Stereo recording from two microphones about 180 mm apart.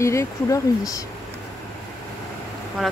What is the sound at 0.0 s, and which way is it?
Speech, 15° left (ahead or behind).